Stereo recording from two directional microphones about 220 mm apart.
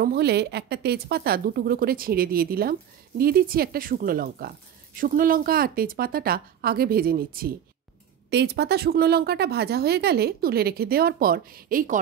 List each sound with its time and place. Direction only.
0.0 s a woman's voice: 45° right (ahead or behind)